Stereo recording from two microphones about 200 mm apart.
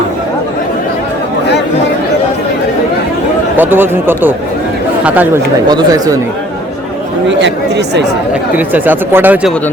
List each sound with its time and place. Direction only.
3.6 s speech: 10° right (ahead or behind)
5.6 s speech: 20° right (ahead or behind)
7.3 s speech: 65° right (ahead or behind)
8.5 s speech: 10° right (ahead or behind)